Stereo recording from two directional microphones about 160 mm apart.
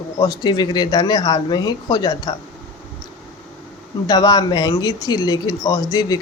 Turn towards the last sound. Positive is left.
turn(degrees=25)  # may be behind; listen again after turning